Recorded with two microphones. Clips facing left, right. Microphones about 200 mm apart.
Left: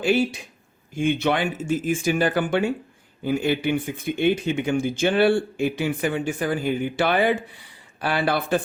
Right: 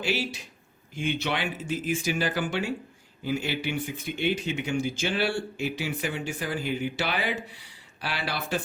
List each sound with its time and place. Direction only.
0.0 s speech: 50° left (ahead or behind)